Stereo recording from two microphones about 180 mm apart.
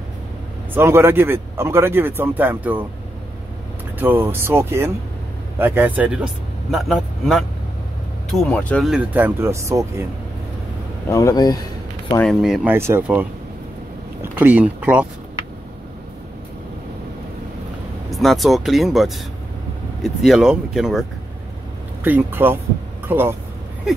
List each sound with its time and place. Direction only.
0.7 s speech: 15° right (ahead or behind)
4.0 s speech: 10° right (ahead or behind); by 8.9 s 5° left (ahead or behind)
8.9 s speech: 10° right (ahead or behind)
11.1 s speech: 15° left (ahead or behind)
12.2 s speech: centre (ahead or behind)
12.7 s speech: 15° right (ahead or behind)
18.1 s speech: centre (ahead or behind)
22.0 s speech: 10° right (ahead or behind)